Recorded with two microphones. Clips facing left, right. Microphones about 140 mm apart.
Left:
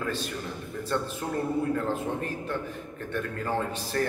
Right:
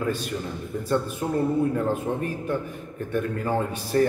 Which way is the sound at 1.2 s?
15° right (ahead or behind).